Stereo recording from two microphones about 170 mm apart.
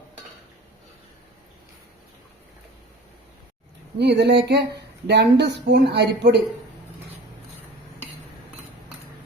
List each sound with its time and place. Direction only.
3.9 s speech: 90° right
5.0 s speech: 80° right